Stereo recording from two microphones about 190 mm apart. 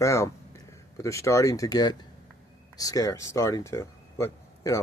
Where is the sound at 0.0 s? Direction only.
15° left (ahead or behind).